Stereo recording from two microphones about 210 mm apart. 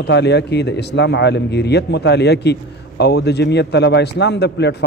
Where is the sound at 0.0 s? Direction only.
55° left (ahead or behind).